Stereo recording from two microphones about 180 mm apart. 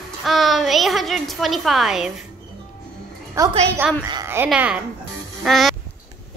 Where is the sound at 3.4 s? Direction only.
15° right (ahead or behind).